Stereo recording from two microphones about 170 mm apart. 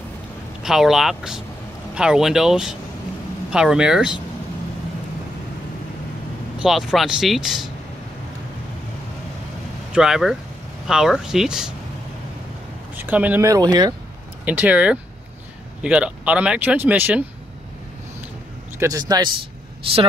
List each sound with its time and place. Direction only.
0.6 s speech: centre (ahead or behind)
6.6 s speech: centre (ahead or behind)
9.9 s speech: 5° right (ahead or behind)
12.9 s speech: 10° right (ahead or behind)
14.4 s speech: 10° right (ahead or behind)
18.8 s a man's voice: 20° right (ahead or behind)